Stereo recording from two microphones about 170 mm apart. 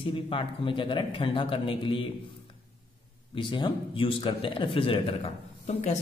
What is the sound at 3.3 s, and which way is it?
A man's voice, 30° left (ahead or behind).